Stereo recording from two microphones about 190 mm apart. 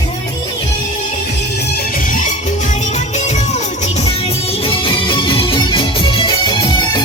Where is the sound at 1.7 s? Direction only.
50° left (ahead or behind).